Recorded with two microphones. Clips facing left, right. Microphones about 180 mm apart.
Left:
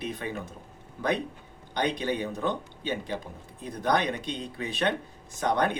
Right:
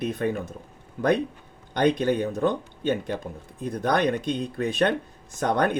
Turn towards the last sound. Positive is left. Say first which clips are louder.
# right 3 dB
turn(degrees=-50)  # may be behind; listen again after turning